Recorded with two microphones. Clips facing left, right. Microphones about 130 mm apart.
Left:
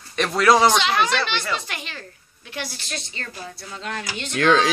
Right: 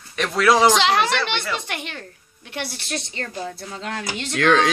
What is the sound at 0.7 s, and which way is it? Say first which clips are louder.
Speech: right 2 dB; 75° right (ahead or behind).